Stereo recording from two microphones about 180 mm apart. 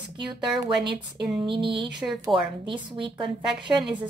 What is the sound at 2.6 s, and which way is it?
Speech, 25° right (ahead or behind).